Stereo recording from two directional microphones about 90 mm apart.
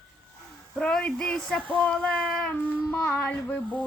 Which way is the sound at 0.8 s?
10° left (ahead or behind).